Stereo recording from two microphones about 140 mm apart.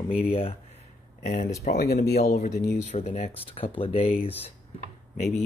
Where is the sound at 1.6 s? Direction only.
75° left (ahead or behind).